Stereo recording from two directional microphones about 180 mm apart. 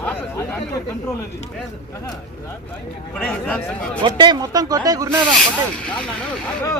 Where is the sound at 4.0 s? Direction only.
25° right (ahead or behind).